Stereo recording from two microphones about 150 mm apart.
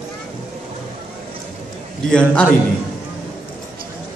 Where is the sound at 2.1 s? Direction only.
5° left (ahead or behind).